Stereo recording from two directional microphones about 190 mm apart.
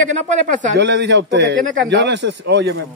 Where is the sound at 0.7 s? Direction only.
65° right (ahead or behind).